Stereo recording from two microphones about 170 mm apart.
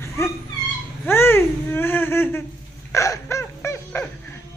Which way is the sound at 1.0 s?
15° left (ahead or behind).